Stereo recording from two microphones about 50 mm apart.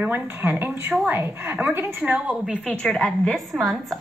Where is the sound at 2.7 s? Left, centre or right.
Left.